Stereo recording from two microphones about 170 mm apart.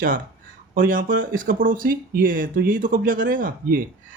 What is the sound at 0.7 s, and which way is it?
Speech, 55° right (ahead or behind).